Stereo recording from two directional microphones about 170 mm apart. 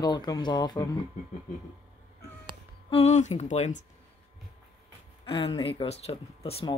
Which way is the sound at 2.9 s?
40° left (ahead or behind).